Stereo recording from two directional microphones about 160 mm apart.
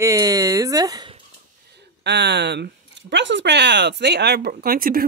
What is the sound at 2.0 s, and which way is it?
Speech, 90° right.